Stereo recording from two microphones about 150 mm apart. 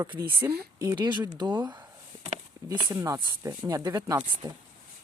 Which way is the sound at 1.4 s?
30° right (ahead or behind).